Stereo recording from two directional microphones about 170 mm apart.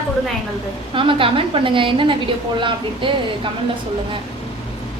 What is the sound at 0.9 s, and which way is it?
Speech, 30° right (ahead or behind).